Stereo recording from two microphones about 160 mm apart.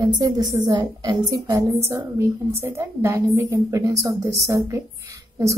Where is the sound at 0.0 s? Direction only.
25° right (ahead or behind).